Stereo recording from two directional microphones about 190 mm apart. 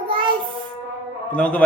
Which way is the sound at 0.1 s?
25° right (ahead or behind).